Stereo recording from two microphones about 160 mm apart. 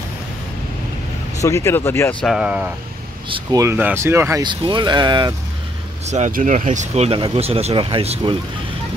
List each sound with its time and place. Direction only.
1.4 s speech: 20° left (ahead or behind)
2.2 s speech: 5° right (ahead or behind)
4.5 s speech: 30° right (ahead or behind)
6.0 s speech: 45° right (ahead or behind)